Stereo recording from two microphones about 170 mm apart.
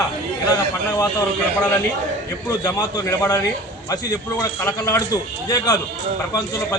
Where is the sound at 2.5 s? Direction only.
20° left (ahead or behind).